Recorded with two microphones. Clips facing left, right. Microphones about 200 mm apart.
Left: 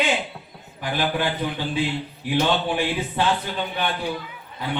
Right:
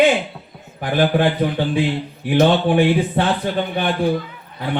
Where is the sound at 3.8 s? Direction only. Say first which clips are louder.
Right 8 dB; 50° right (ahead or behind).